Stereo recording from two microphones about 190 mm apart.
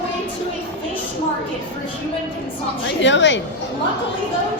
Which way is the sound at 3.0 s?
70° left (ahead or behind).